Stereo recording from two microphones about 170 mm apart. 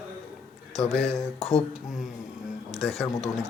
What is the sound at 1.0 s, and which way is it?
Speech, 35° left (ahead or behind).